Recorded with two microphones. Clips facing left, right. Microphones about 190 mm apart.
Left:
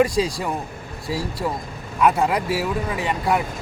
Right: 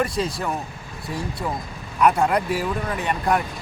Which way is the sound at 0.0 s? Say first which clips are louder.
Left 4 dB; 10° left (ahead or behind).